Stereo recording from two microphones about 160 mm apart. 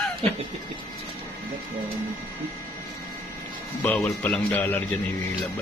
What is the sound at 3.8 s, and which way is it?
Speech, 10° left (ahead or behind).